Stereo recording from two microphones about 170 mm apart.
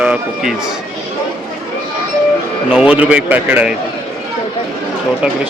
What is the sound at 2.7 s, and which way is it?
Speech, 5° right (ahead or behind).